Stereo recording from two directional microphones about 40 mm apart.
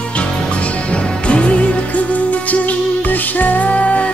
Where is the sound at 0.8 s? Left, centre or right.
Left.